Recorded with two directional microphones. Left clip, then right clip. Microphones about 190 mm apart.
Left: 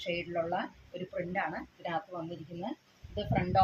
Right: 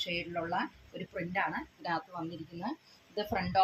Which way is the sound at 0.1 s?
15° left (ahead or behind).